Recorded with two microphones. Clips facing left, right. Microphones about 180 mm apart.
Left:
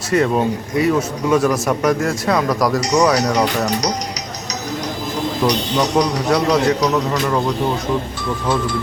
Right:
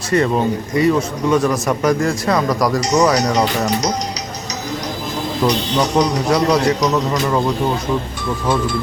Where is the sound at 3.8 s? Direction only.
30° right (ahead or behind).